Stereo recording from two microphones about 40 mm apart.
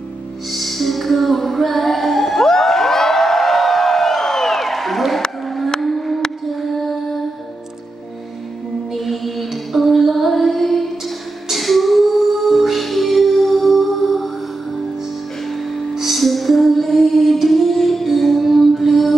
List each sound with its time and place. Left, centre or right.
0.5 s music: centre
5.8 s a sound: centre
8.9 s music: centre
15.9 s music: centre